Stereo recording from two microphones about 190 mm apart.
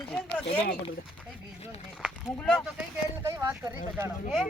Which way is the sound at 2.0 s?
5° left (ahead or behind).